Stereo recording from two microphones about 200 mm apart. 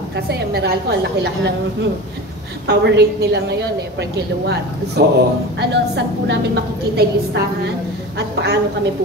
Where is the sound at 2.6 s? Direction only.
55° right (ahead or behind).